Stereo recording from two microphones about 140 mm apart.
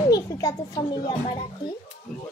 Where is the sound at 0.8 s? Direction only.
35° left (ahead or behind).